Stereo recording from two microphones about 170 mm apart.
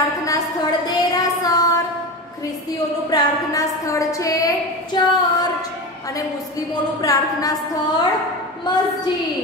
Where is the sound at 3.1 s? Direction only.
20° left (ahead or behind).